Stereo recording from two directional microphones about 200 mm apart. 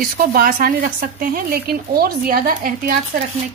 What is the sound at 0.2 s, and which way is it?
A woman's voice, 45° right (ahead or behind).